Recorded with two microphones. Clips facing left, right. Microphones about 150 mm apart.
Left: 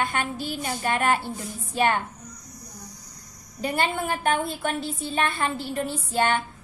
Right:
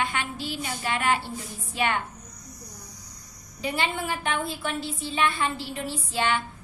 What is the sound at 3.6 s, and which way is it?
A woman's voice, 50° left (ahead or behind).